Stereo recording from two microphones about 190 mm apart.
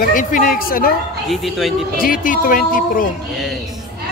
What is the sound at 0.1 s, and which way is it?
Speech, 45° left (ahead or behind).